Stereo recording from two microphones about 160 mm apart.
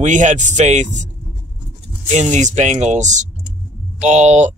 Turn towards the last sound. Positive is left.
turn(degrees=-45)  # may be behind; listen again after turning